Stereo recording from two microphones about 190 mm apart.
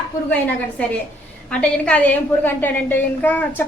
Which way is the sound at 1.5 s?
5° left (ahead or behind).